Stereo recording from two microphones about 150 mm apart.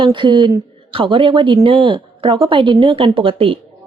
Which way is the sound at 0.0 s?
30° right (ahead or behind).